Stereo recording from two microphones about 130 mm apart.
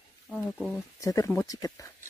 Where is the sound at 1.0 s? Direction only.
25° left (ahead or behind).